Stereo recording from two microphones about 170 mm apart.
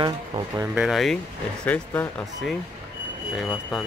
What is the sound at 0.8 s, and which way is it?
Speech, centre (ahead or behind).